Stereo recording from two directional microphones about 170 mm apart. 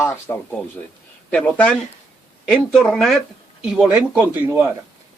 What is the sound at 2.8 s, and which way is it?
Speech, centre (ahead or behind).